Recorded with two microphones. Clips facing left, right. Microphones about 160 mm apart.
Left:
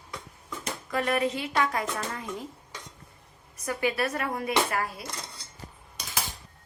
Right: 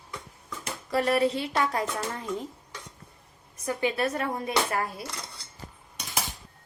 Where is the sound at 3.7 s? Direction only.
20° right (ahead or behind).